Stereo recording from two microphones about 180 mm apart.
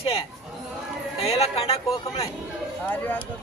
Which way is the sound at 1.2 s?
35° left (ahead or behind).